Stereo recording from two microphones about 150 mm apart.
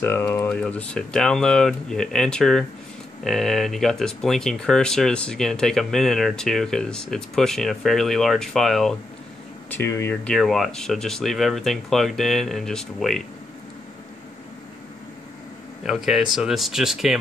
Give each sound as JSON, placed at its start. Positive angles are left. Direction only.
{"t": 0.0, "sound": "speech", "side_deg": 15}
{"t": 9.7, "sound": "speech", "side_deg": 15}
{"t": 10.2, "sound": "speech", "side_deg": 0}
{"t": 15.8, "sound": "speech", "side_deg": -5}